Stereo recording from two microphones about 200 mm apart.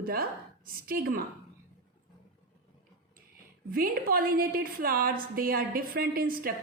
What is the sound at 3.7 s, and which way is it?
A woman's voice, 45° right (ahead or behind).